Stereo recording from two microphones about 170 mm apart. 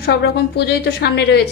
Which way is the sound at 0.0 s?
75° left (ahead or behind).